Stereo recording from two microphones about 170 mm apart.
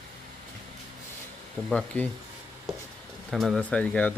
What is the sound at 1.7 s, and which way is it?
Speech, 5° left (ahead or behind).